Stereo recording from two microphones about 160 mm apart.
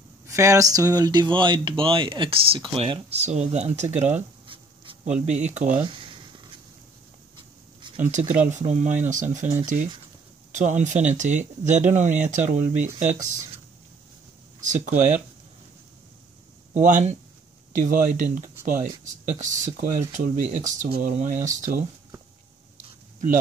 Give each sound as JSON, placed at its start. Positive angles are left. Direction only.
{"t": 0.3, "sound": "speech", "side_deg": -20}
{"t": 5.8, "sound": "a sound", "side_deg": -30}
{"t": 8.1, "sound": "speech", "side_deg": -50}
{"t": 10.5, "sound": "speech", "side_deg": -50}
{"t": 14.6, "sound": "speech", "side_deg": -50}
{"t": 16.7, "sound": "speech", "side_deg": -50}